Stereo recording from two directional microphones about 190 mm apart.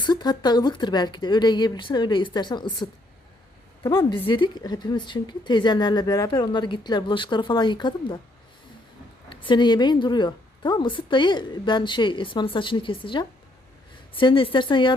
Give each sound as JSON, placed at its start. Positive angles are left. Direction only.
{"t": 0.0, "sound": "a woman's voice", "side_deg": 20}
{"t": 9.3, "sound": "a woman's voice", "side_deg": 25}